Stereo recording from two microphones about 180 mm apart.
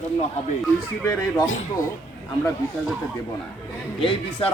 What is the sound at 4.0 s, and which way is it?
Speech, 30° left (ahead or behind).